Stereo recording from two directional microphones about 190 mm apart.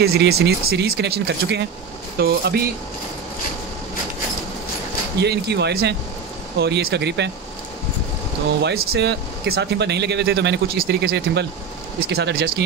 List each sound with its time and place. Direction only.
0.0 s speech: 55° right (ahead or behind)
5.2 s speech: 60° right (ahead or behind)
8.6 s speech: 55° right (ahead or behind)